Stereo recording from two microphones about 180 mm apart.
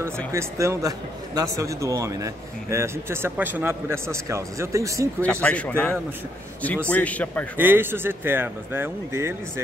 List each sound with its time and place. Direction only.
0.3 s a man's voice: 15° right (ahead or behind)
5.2 s speech: 5° left (ahead or behind)
7.5 s a man's voice: 10° right (ahead or behind)